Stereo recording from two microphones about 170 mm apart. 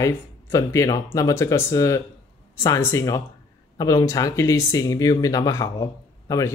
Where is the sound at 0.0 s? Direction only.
15° left (ahead or behind).